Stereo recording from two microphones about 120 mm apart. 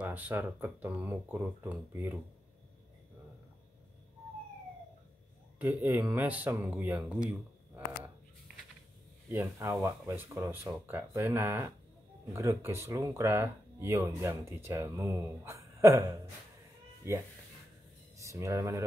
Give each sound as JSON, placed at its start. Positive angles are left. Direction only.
{"t": 0.0, "sound": "speech", "side_deg": -15}
{"t": 5.6, "sound": "speech", "side_deg": -15}
{"t": 9.3, "sound": "speech", "side_deg": -20}